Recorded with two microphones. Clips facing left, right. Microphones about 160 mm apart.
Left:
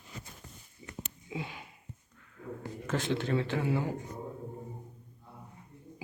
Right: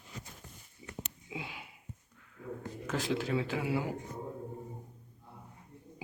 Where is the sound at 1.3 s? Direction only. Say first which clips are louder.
Left 4 dB; 5° right (ahead or behind).